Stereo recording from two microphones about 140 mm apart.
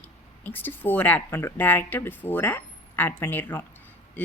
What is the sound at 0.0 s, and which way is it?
Speech, 15° left (ahead or behind).